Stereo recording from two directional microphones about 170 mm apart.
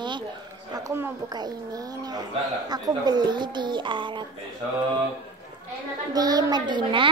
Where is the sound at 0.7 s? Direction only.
15° right (ahead or behind).